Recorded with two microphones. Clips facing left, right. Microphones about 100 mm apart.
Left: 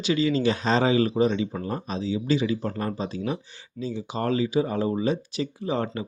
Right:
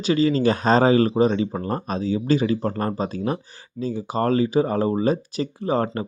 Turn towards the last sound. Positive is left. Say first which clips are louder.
# right 5 dB
turn(degrees=-45)  # may be behind; listen again after turning